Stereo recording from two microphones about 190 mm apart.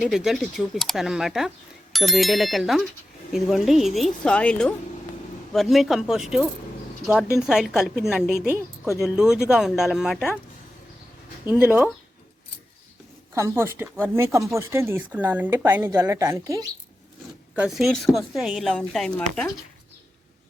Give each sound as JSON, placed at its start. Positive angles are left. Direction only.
{"t": 0.0, "sound": "speech", "side_deg": -5}
{"t": 11.4, "sound": "speech", "side_deg": -5}
{"t": 13.3, "sound": "speech", "side_deg": -15}
{"t": 17.5, "sound": "speech", "side_deg": -5}